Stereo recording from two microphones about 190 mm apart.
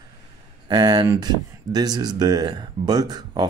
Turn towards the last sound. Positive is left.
turn(degrees=-20)  # may be behind; listen again after turning